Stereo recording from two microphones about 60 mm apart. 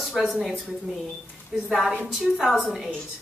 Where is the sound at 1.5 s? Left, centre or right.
Centre.